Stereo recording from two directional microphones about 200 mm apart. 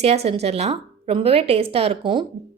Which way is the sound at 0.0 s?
30° right (ahead or behind).